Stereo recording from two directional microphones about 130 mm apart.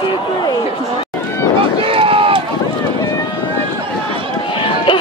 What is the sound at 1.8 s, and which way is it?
Run, 45° right (ahead or behind).